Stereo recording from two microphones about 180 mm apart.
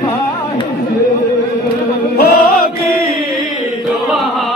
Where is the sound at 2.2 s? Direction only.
60° left (ahead or behind).